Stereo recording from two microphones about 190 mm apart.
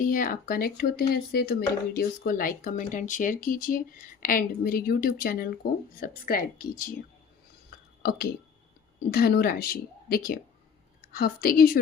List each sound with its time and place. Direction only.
0.0 s speech: 45° left (ahead or behind)
9.0 s speech: 55° left (ahead or behind)